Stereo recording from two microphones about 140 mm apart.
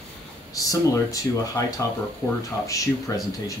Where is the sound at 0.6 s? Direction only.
25° left (ahead or behind).